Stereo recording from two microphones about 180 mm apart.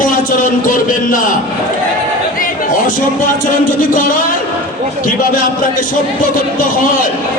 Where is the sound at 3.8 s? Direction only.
50° left (ahead or behind).